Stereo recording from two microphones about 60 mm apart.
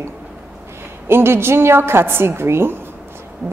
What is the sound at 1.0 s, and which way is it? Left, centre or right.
A woman's voice, right.